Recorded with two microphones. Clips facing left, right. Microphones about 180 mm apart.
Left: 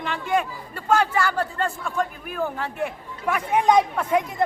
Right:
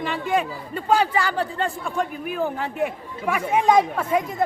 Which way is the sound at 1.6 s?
15° right (ahead or behind).